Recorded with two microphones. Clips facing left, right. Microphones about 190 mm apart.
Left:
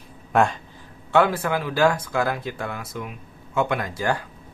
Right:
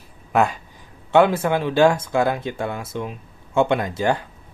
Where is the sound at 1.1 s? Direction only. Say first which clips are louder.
Right 4 dB; 20° right (ahead or behind).